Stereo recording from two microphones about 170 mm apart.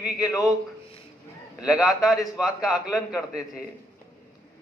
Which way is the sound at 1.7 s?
20° left (ahead or behind).